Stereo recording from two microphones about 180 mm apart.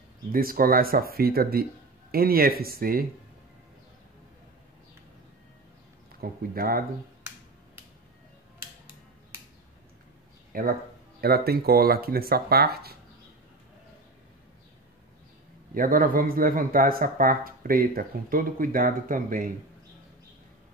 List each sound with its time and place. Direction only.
0.3 s speech: 55° right (ahead or behind)
6.2 s speech: 55° right (ahead or behind)
10.5 s speech: 55° right (ahead or behind)
15.7 s speech: 50° right (ahead or behind)